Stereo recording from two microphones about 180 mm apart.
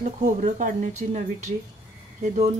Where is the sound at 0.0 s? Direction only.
45° right (ahead or behind).